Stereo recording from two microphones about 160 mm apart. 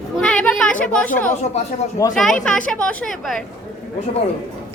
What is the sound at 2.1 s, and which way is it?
Speech, 5° left (ahead or behind).